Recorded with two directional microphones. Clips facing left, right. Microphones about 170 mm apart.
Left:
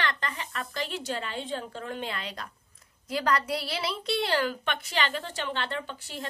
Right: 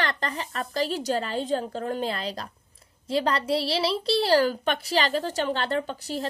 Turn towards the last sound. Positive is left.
turn(degrees=-40)  # may be behind; listen again after turning